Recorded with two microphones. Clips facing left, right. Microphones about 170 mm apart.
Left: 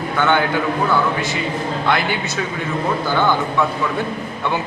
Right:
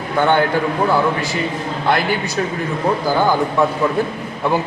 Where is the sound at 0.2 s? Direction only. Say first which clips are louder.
Right 3 dB; 35° right (ahead or behind).